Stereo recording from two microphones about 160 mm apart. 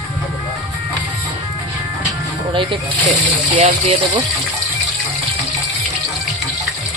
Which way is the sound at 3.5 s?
45° right (ahead or behind).